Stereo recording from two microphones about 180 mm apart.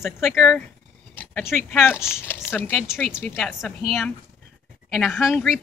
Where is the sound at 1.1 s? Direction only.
10° left (ahead or behind).